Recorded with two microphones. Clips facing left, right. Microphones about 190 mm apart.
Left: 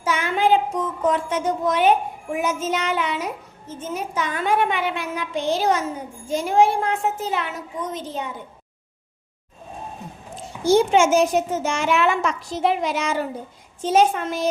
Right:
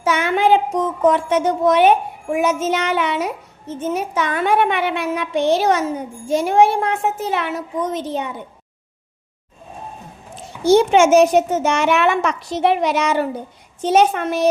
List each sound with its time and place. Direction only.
0.0 s a woman's voice: 70° right (ahead or behind)
10.6 s a child's voice: 70° right (ahead or behind)